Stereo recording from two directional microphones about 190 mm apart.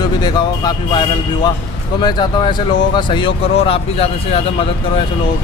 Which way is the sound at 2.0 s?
20° left (ahead or behind).